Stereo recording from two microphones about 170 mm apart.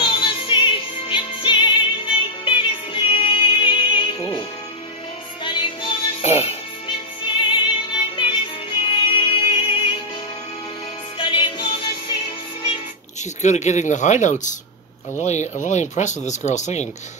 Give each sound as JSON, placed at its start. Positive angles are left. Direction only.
{"t": 0.0, "sound": "music", "side_deg": 30}
{"t": 7.5, "sound": "music", "side_deg": 25}
{"t": 11.1, "sound": "music", "side_deg": 30}
{"t": 13.2, "sound": "speech", "side_deg": 45}